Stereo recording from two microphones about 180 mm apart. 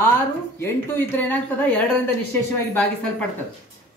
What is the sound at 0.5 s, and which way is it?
A woman's voice, 10° left (ahead or behind).